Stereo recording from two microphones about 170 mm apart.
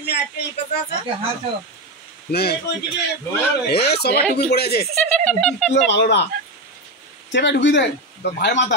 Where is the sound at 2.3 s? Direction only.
70° left (ahead or behind).